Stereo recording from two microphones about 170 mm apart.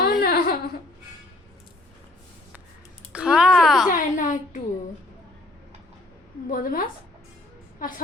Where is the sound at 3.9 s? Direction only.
50° left (ahead or behind).